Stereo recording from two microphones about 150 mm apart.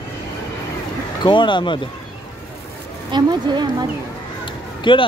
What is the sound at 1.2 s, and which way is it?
Speech, 30° left (ahead or behind).